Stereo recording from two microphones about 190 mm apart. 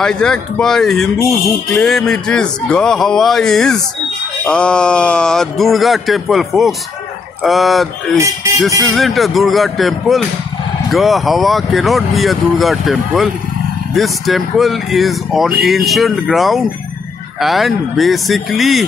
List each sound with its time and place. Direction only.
0.0 s speech: 5° left (ahead or behind)
8.6 s speech: 15° right (ahead or behind)
8.9 s speech: centre (ahead or behind)